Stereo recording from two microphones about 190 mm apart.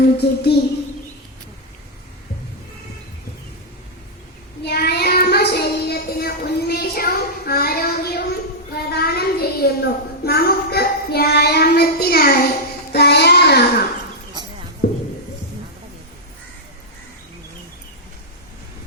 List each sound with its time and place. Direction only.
0.0 s speech: 60° left (ahead or behind)
4.6 s child singing: 60° left (ahead or behind)
8.7 s a sound: 55° left (ahead or behind)
12.9 s child singing: 60° left (ahead or behind)